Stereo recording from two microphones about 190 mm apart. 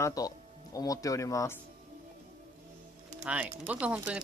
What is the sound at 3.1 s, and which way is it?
Speech, 10° right (ahead or behind).